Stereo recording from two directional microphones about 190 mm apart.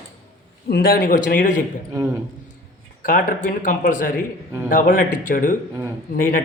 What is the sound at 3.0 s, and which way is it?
Speech, 45° left (ahead or behind).